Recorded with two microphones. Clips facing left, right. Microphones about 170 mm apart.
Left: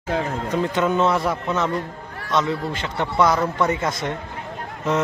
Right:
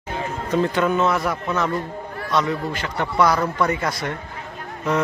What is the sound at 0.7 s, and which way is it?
Speech, 25° left (ahead or behind).